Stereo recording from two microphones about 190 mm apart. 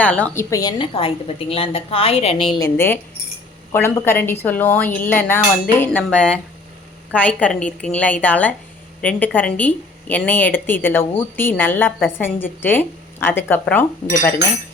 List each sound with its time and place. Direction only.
0.0 s a woman's voice: 5° left (ahead or behind)
0.8 s a woman's voice: 30° left (ahead or behind)
2.6 s a woman's voice: 10° left (ahead or behind)
5.8 s dishes: 10° left (ahead or behind)
7.1 s a woman's voice: 5° left (ahead or behind)